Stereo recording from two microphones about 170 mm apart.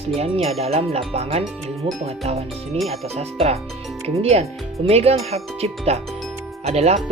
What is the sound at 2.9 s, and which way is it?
Speech, 40° right (ahead or behind).